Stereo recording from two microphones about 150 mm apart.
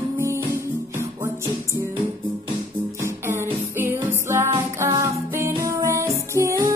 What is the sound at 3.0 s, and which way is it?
Music, 15° right (ahead or behind).